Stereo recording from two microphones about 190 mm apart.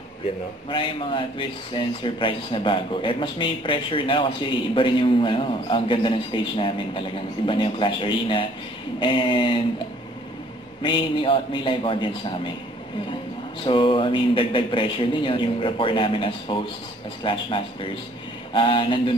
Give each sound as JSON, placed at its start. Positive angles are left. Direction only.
{"t": 0.7, "sound": "a man's voice", "side_deg": 25}
{"t": 10.8, "sound": "a man's voice", "side_deg": 25}
{"t": 13.7, "sound": "a man's voice", "side_deg": 25}